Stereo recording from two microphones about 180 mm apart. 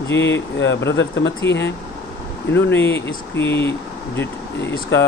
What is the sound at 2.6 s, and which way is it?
Speech, 10° left (ahead or behind).